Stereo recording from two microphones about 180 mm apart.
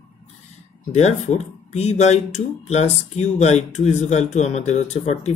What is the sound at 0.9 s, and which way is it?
Speech, 40° left (ahead or behind).